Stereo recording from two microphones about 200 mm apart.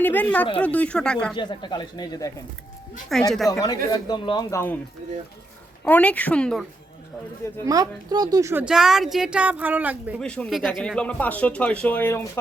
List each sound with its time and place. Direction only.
0.0 s a woman's voice: 10° left (ahead or behind)
1.4 s speech: 20° left (ahead or behind)
3.3 s speech: centre (ahead or behind)
3.9 s speech: 20° left (ahead or behind)
5.8 s a woman's voice: 5° left (ahead or behind)
7.6 s speech: 15° right (ahead or behind)
10.2 s speech: 5° left (ahead or behind)